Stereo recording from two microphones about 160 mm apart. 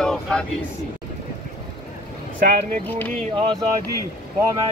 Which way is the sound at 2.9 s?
10° left (ahead or behind).